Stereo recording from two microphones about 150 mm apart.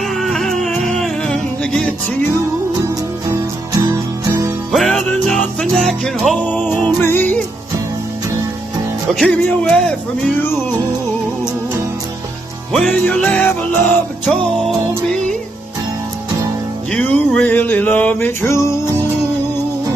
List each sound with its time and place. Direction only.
0.1 s music: centre (ahead or behind)
2.8 s music: 20° right (ahead or behind)
4.7 s music: centre (ahead or behind)
9.1 s speech: 5° left (ahead or behind)
12.7 s music: 5° left (ahead or behind)
16.9 s music: 10° left (ahead or behind)